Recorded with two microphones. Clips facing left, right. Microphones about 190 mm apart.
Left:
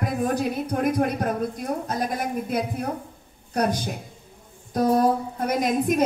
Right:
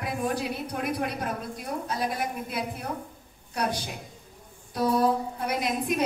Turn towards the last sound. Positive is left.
turn(degrees=45)  # may be behind; listen again after turning